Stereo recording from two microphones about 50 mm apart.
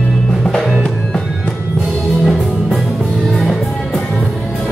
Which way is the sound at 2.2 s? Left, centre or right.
Centre.